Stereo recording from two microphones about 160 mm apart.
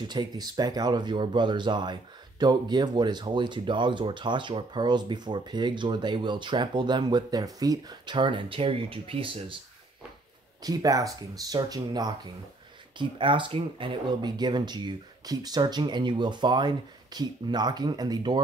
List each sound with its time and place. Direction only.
0.1 s speech: 25° right (ahead or behind)
10.6 s speech: 25° right (ahead or behind)